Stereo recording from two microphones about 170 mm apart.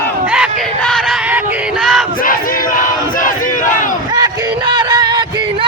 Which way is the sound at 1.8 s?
Centre (ahead or behind).